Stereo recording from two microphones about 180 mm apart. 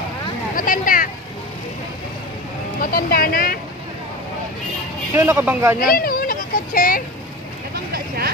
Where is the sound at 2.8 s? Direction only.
55° left (ahead or behind).